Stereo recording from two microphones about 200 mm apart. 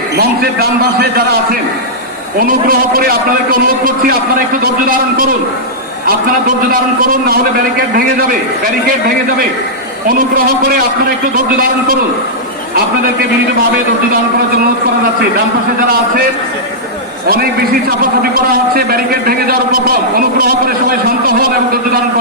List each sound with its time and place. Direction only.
0.2 s a man's voice: 50° right (ahead or behind)
2.6 s a man's voice: 50° right (ahead or behind)
18.2 s a man's voice: 50° right (ahead or behind)